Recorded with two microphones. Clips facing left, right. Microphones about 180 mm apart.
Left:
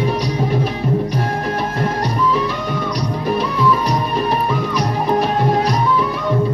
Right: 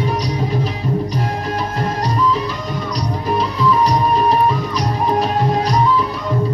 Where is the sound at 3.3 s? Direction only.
60° left (ahead or behind).